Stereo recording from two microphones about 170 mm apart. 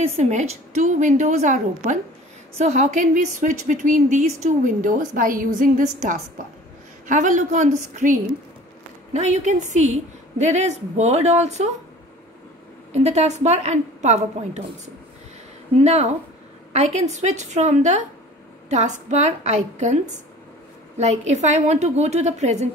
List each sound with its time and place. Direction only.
0.0 s a woman's voice: 40° right (ahead or behind)
12.9 s a woman's voice: 40° right (ahead or behind)
15.8 s a woman's voice: 40° right (ahead or behind)